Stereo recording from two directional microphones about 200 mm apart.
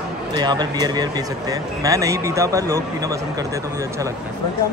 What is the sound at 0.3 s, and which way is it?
Speech, 20° right (ahead or behind).